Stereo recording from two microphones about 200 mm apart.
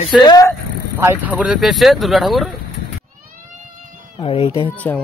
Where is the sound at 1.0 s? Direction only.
10° right (ahead or behind).